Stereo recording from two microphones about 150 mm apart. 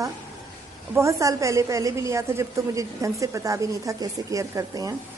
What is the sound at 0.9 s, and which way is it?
A woman's voice, 20° right (ahead or behind).